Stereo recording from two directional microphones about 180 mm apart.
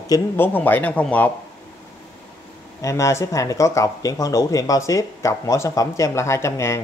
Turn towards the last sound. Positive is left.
turn(degrees=15)  # may be behind; listen again after turning